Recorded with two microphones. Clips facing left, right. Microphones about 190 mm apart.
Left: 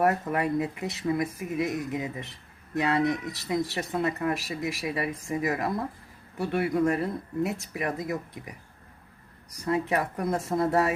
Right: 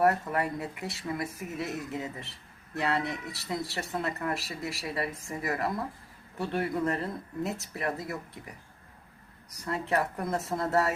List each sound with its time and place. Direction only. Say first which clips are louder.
0.0 s speech: left 1 dB; 15° left (ahead or behind)
9.6 s speech: left 3 dB; 15° left (ahead or behind)